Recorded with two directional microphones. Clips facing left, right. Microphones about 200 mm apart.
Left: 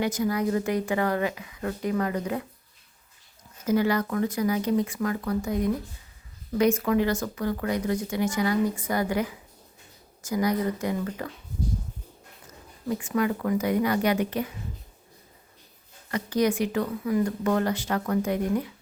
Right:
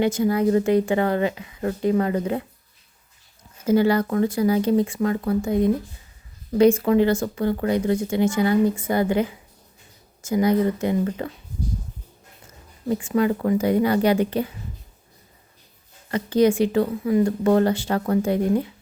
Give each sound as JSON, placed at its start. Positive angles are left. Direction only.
{"t": 0.0, "sound": "speech", "side_deg": -25}
{"t": 3.7, "sound": "speech", "side_deg": -30}
{"t": 12.9, "sound": "speech", "side_deg": -30}
{"t": 16.1, "sound": "speech", "side_deg": -30}